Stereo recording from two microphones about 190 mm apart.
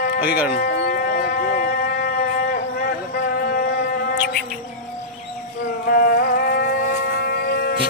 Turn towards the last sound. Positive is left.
turn(degrees=55)  # may be behind; listen again after turning